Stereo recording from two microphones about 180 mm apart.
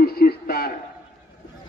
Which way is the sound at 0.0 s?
60° left (ahead or behind).